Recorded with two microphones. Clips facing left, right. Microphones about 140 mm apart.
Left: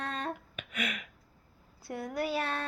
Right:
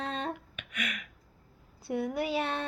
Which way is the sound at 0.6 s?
35° left (ahead or behind).